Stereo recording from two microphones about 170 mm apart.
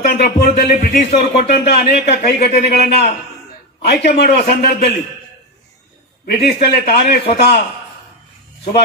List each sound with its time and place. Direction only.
0.2 s a man's voice: 70° left (ahead or behind)
0.7 s speech: 45° left (ahead or behind)
1.6 s a man's voice: 70° left (ahead or behind)
6.2 s a man's voice: 70° left (ahead or behind)